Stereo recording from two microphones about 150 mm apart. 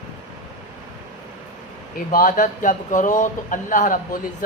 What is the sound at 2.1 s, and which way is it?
Speech, 65° left (ahead or behind).